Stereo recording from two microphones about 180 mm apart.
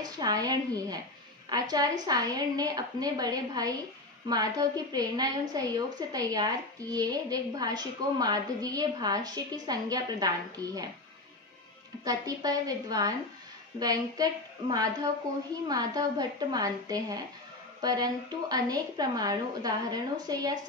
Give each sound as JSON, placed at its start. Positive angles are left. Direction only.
{"t": 0.0, "sound": "a woman's voice", "side_deg": -20}
{"t": 12.0, "sound": "a woman's voice", "side_deg": -20}